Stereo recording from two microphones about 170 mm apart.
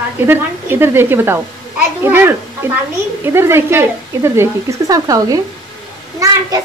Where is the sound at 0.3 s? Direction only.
15° right (ahead or behind).